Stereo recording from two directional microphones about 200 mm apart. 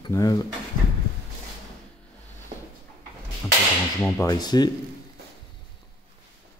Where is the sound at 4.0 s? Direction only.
15° left (ahead or behind).